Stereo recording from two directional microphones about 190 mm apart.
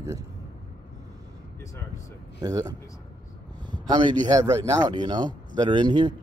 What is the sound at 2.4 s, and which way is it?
Speech, 20° right (ahead or behind).